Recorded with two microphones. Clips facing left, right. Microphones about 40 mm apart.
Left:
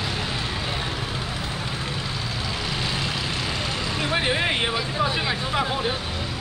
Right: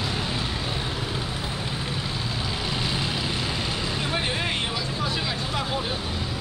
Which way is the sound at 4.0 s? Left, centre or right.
Centre.